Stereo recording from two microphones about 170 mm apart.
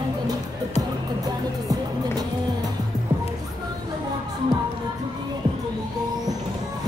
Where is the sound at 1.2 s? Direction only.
20° right (ahead or behind).